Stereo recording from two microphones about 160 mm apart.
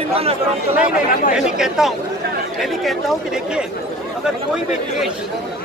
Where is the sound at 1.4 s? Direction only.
5° right (ahead or behind).